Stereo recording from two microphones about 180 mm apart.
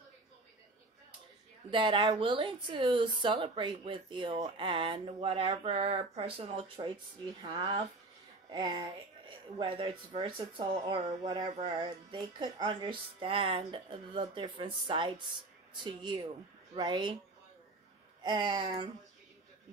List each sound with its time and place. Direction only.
1.7 s speech: 30° right (ahead or behind)
18.2 s speech: 25° right (ahead or behind)